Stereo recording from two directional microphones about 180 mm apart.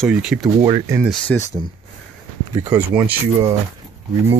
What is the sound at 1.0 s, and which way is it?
Speech, 5° left (ahead or behind).